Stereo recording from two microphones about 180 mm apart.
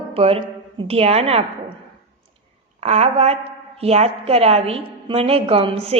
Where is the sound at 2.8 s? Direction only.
35° right (ahead or behind).